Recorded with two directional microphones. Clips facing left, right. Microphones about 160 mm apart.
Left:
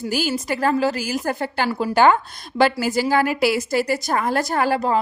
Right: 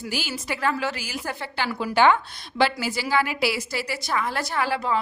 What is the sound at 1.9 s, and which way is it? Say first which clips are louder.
Speech: left 2 dB; 45° left (ahead or behind).